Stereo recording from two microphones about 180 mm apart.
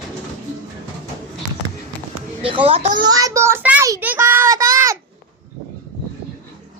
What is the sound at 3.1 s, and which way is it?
A child's voice, 20° right (ahead or behind).